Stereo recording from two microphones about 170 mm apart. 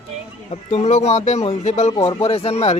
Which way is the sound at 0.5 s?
40° left (ahead or behind).